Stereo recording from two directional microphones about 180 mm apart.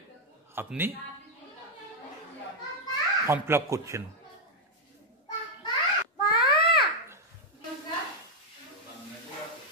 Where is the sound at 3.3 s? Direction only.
15° right (ahead or behind).